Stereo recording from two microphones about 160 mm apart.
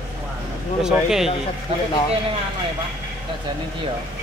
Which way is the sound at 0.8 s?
Centre (ahead or behind).